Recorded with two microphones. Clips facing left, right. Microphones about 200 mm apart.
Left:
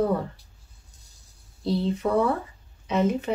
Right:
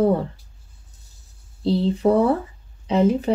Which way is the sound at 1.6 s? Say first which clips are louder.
Right 6 dB; 30° right (ahead or behind).